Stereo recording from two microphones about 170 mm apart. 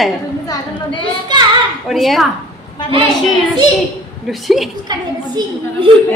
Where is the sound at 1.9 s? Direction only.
Centre (ahead or behind).